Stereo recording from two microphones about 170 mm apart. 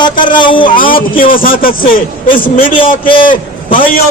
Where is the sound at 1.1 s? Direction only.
55° left (ahead or behind).